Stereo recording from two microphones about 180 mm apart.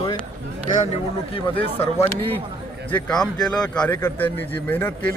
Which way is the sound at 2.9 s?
5° left (ahead or behind).